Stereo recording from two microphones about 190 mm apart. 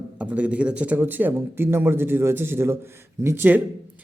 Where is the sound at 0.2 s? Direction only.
5° right (ahead or behind).